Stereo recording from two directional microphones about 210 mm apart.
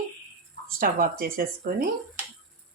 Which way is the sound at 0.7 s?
40° right (ahead or behind).